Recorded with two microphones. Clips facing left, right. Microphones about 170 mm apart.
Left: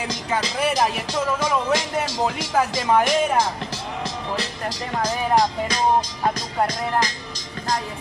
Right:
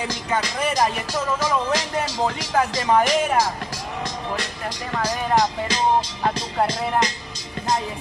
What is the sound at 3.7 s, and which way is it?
Music, 30° left (ahead or behind).